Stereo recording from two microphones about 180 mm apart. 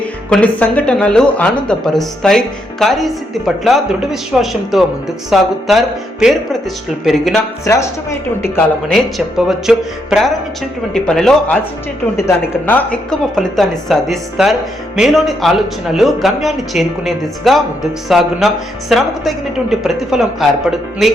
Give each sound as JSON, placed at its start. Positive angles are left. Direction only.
{"t": 0.0, "sound": "speech", "side_deg": 5}
{"t": 7.6, "sound": "speech", "side_deg": 15}
{"t": 8.9, "sound": "speech", "side_deg": 0}